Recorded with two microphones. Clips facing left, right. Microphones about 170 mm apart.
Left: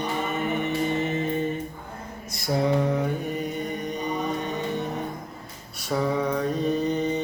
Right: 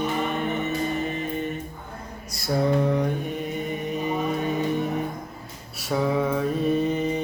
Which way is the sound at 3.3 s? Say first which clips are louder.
Even; centre (ahead or behind).